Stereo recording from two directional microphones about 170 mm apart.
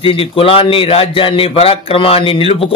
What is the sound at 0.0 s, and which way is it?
A man's voice, 35° left (ahead or behind).